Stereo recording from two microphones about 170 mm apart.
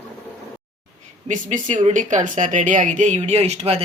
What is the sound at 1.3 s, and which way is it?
Speech, 45° right (ahead or behind).